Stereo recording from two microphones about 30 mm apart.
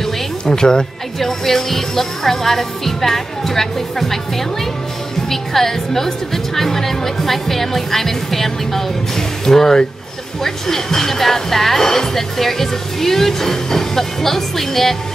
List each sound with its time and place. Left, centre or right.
0.5 s speech: left
1.2 s speech: centre